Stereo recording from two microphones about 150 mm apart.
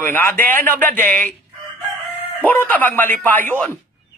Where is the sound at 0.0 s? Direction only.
10° left (ahead or behind).